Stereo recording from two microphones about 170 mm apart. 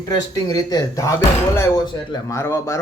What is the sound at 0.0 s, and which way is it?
Speech, 20° left (ahead or behind).